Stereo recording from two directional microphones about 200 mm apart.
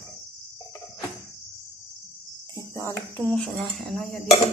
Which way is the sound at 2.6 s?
15° left (ahead or behind).